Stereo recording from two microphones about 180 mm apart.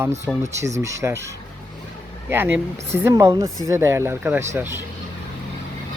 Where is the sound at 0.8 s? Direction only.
15° right (ahead or behind).